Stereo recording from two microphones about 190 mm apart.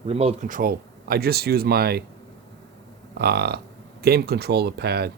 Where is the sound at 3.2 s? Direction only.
55° right (ahead or behind).